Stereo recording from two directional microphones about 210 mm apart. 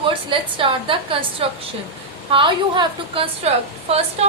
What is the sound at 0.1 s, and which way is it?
A woman's voice, 25° right (ahead or behind).